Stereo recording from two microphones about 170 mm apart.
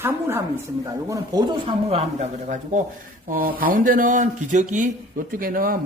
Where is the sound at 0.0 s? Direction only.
15° right (ahead or behind).